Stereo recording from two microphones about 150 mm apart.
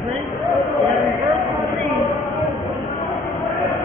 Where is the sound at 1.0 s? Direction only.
Centre (ahead or behind).